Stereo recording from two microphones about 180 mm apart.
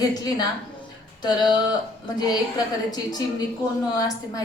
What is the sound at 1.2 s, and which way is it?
A woman's voice, 25° left (ahead or behind).